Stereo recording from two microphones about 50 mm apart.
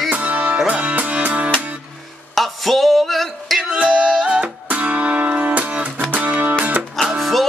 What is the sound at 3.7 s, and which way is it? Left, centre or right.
Music, right.